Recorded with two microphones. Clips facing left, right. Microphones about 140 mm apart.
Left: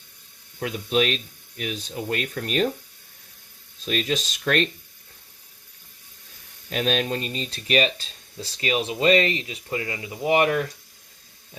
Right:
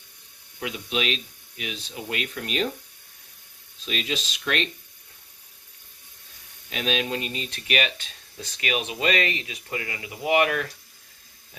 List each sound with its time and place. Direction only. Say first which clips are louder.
0.6 s speech: left 6 dB; 40° left (ahead or behind)
3.8 s speech: left 5 dB; 45° left (ahead or behind)
6.7 s speech: left 3 dB; 40° left (ahead or behind)